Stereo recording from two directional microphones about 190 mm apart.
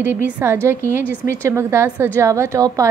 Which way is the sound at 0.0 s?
10° right (ahead or behind).